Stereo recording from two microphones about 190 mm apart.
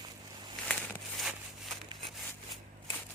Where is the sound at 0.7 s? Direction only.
5° left (ahead or behind).